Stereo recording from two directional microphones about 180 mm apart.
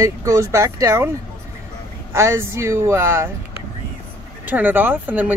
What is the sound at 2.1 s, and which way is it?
Speech, 15° right (ahead or behind).